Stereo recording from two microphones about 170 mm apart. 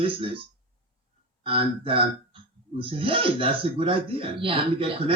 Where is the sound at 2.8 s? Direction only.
30° right (ahead or behind).